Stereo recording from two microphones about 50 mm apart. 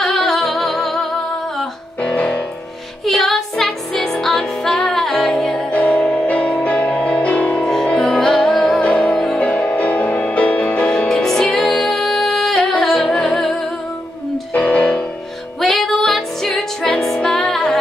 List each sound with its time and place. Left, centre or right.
0.0 s music: centre
2.0 s music: left
3.1 s music: centre
5.7 s music: left
7.6 s music: centre
10.9 s music: centre
14.5 s music: left
15.6 s music: centre